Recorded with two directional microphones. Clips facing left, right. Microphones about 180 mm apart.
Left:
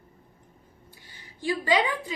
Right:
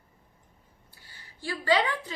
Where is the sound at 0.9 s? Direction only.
15° left (ahead or behind).